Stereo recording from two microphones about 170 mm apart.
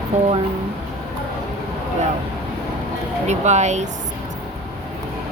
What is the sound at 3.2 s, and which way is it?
Speech, 40° right (ahead or behind).